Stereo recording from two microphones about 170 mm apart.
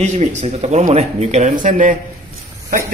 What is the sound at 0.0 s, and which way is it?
Speech, 45° right (ahead or behind).